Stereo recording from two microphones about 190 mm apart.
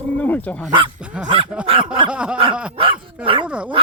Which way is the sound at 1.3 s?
25° right (ahead or behind).